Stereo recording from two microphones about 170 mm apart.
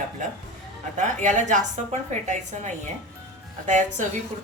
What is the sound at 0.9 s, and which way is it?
A woman's voice, 45° right (ahead or behind).